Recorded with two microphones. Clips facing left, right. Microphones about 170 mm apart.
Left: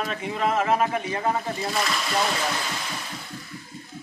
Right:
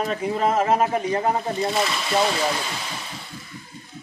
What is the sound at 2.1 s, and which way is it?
Speech, 15° right (ahead or behind).